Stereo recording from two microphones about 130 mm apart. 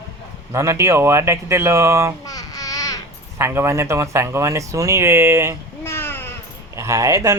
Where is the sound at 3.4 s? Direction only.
20° right (ahead or behind).